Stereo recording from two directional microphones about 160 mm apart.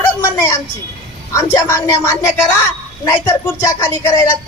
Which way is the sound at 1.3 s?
15° left (ahead or behind).